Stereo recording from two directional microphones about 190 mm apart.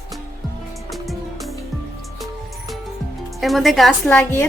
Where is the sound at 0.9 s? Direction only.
Centre (ahead or behind).